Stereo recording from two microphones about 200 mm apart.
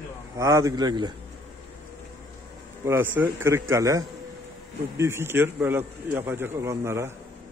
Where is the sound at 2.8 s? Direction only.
10° right (ahead or behind).